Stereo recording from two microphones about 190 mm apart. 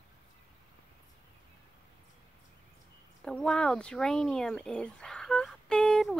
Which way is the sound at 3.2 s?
5° left (ahead or behind).